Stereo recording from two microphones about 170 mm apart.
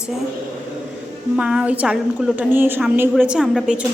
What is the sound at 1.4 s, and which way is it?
A woman's voice, 5° right (ahead or behind).